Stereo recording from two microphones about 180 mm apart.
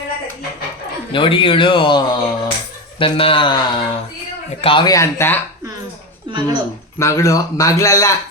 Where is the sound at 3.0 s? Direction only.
30° left (ahead or behind).